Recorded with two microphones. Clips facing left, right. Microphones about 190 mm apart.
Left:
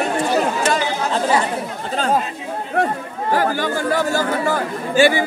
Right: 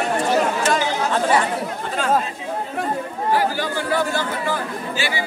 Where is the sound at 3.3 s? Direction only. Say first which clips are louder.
Left 2 dB; 50° left (ahead or behind).